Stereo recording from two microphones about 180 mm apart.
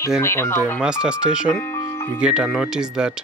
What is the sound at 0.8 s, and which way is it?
Speech, 5° right (ahead or behind).